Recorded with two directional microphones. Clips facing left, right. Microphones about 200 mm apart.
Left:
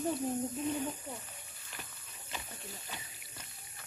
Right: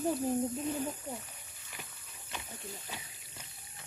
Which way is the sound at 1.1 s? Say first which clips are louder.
Right 3 dB; 15° right (ahead or behind).